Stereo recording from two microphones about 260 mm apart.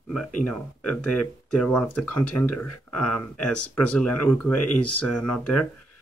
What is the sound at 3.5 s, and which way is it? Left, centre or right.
Speech, left.